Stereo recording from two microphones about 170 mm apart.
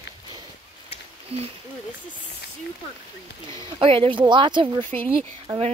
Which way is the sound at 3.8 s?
30° right (ahead or behind).